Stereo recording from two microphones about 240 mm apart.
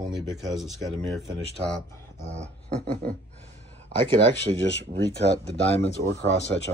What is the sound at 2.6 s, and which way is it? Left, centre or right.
Beatboxing, right.